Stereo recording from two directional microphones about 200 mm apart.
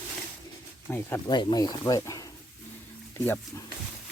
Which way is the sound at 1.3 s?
20° left (ahead or behind).